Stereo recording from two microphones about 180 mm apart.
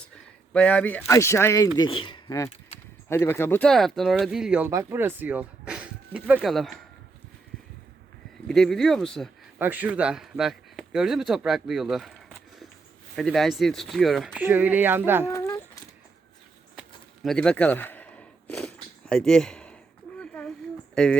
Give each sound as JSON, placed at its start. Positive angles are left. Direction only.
{"t": 0.5, "sound": "speech", "side_deg": 5}
{"t": 8.4, "sound": "speech", "side_deg": 5}
{"t": 9.6, "sound": "speech", "side_deg": -10}
{"t": 15.3, "sound": "a sound", "side_deg": 15}
{"t": 17.2, "sound": "a sound", "side_deg": 5}
{"t": 20.9, "sound": "speech", "side_deg": 5}